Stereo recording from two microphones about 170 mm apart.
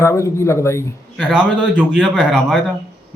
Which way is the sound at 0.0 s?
15° left (ahead or behind).